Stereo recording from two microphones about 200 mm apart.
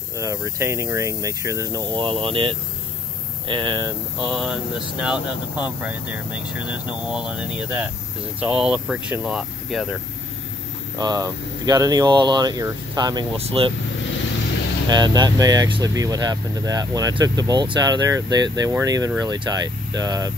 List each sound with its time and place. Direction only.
0.2 s speech: 15° right (ahead or behind)
4.3 s speech: centre (ahead or behind)
11.0 s speech: 20° right (ahead or behind)
14.9 s speech: 20° right (ahead or behind)